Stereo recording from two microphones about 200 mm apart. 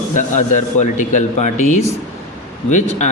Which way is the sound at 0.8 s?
40° left (ahead or behind).